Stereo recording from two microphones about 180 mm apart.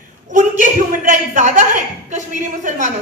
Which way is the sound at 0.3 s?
45° right (ahead or behind).